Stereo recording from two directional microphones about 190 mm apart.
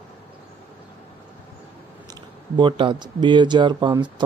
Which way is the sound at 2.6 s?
25° right (ahead or behind).